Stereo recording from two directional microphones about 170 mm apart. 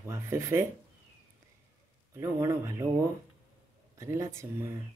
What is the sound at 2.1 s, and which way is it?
Speech, 15° right (ahead or behind).